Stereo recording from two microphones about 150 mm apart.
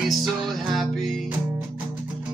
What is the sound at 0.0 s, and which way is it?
Music, centre (ahead or behind).